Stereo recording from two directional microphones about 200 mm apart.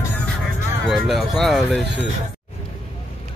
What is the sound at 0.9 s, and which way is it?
Speech, centre (ahead or behind).